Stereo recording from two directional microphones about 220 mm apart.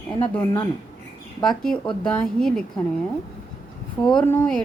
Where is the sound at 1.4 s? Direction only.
5° left (ahead or behind).